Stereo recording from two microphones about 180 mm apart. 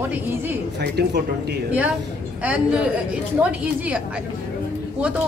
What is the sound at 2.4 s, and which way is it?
Speech, 5° right (ahead or behind).